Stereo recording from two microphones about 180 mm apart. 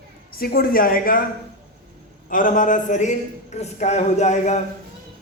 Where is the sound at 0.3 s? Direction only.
55° left (ahead or behind).